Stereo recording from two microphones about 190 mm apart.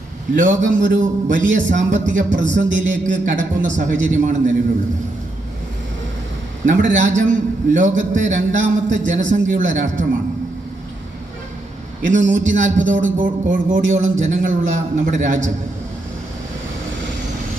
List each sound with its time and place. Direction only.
0.3 s a man's voice: 40° right (ahead or behind)
6.7 s a man's voice: 40° right (ahead or behind)
12.0 s a man's voice: 40° right (ahead or behind)